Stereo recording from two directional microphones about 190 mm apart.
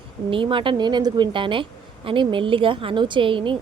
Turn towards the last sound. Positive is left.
turn(degrees=-25)  # may be behind; listen again after turning